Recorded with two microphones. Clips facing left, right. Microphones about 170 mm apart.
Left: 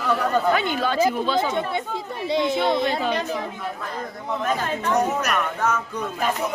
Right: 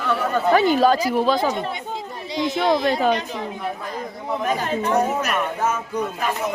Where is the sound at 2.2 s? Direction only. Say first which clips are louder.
Left 3 dB; 60° left (ahead or behind).